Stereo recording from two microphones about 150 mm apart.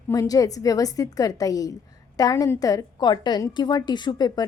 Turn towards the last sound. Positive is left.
turn(degrees=25)  # may be behind; listen again after turning